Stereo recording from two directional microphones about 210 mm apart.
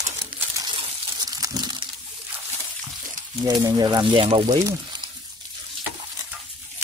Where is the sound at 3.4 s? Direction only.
15° right (ahead or behind).